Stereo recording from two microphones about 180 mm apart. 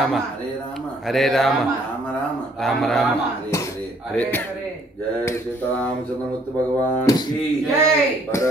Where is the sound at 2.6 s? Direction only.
Centre (ahead or behind).